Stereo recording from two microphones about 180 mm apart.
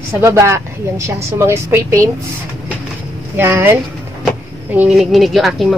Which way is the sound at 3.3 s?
15° right (ahead or behind).